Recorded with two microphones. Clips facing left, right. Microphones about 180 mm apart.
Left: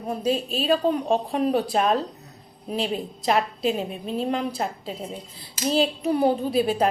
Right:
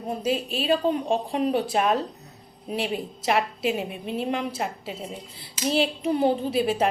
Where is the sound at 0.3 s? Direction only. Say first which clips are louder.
Left 1 dB; 30° left (ahead or behind).